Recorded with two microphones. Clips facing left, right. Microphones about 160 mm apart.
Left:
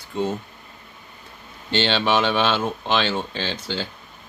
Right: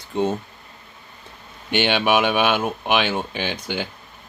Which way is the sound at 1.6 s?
15° right (ahead or behind).